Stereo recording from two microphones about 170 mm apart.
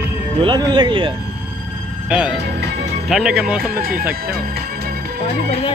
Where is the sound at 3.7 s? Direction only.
65° right (ahead or behind).